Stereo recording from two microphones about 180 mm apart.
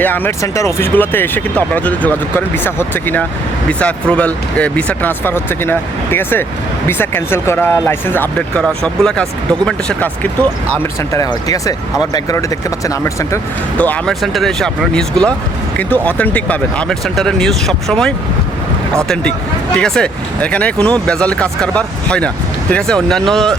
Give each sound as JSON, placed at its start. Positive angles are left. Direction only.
{"t": 0.0, "sound": "speech", "side_deg": 10}
{"t": 11.1, "sound": "speech", "side_deg": 20}
{"t": 13.7, "sound": "speech", "side_deg": 10}